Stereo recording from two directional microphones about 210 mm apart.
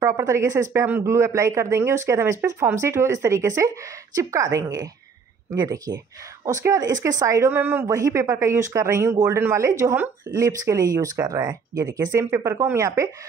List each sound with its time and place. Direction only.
0.0 s speech: 15° right (ahead or behind)